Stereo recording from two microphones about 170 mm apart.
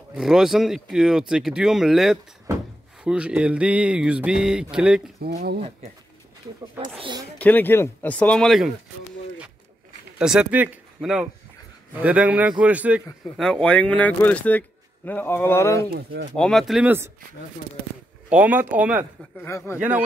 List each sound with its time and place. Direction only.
0.1 s a sound: centre (ahead or behind)
5.2 s speech: 75° right (ahead or behind)
7.0 s speech: 25° right (ahead or behind)
7.3 s speech: 10° left (ahead or behind)
10.1 s a man's voice: 5° right (ahead or behind)
13.4 s speech: 5° left (ahead or behind)
15.9 s speech: 65° right (ahead or behind)
16.3 s a sound: 5° left (ahead or behind)
18.3 s a man's voice: 10° right (ahead or behind)
19.4 s speech: 15° left (ahead or behind)